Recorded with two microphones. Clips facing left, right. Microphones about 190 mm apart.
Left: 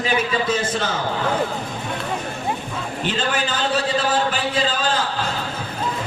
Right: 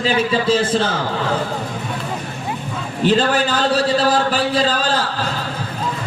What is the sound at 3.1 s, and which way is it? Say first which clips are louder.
Speech: right 9 dB; 40° right (ahead or behind).